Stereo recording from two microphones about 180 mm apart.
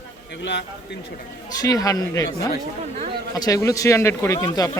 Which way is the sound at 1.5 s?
20° left (ahead or behind).